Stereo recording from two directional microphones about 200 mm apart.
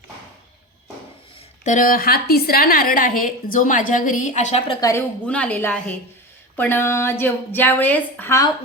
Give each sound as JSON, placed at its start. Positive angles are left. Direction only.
{"t": 1.6, "sound": "a woman's voice", "side_deg": 40}
{"t": 4.8, "sound": "a woman's voice", "side_deg": 15}